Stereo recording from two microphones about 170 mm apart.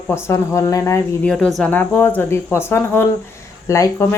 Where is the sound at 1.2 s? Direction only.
Centre (ahead or behind).